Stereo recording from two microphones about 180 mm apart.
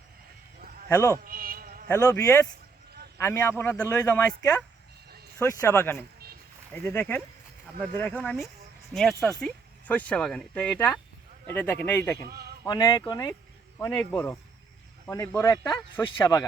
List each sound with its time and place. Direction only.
0.9 s speech: 20° left (ahead or behind)
1.2 s insect: 50° right (ahead or behind)
1.9 s speech: 20° left (ahead or behind)
12.3 s a man's voice: 60° right (ahead or behind)
12.6 s speech: 25° left (ahead or behind)